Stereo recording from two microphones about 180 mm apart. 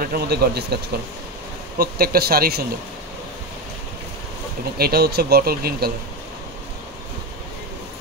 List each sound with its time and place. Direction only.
0.0 s speech: 60° right (ahead or behind)
1.8 s speech: 60° right (ahead or behind)
4.7 s speech: 60° right (ahead or behind)